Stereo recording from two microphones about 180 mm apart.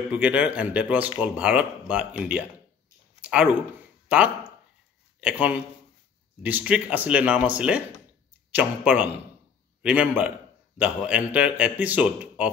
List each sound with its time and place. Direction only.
0.1 s speech: 10° right (ahead or behind)
3.2 s a sound: 5° right (ahead or behind)
4.1 s a man's voice: 5° right (ahead or behind)